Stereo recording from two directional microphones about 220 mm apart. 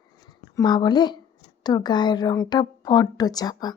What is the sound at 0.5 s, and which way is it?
A woman's voice, 20° left (ahead or behind).